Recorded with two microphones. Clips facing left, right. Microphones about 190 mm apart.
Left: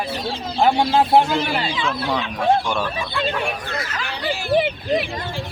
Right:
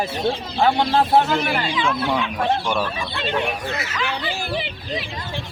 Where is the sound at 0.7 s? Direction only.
10° left (ahead or behind).